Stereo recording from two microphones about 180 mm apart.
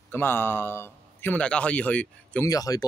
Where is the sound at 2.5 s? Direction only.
20° left (ahead or behind).